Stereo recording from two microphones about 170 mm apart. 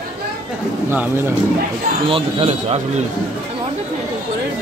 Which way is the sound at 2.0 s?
35° right (ahead or behind).